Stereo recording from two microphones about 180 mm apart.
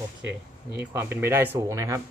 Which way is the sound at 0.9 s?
15° right (ahead or behind).